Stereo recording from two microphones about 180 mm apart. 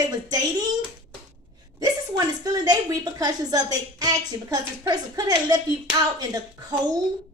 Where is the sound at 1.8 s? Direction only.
20° right (ahead or behind).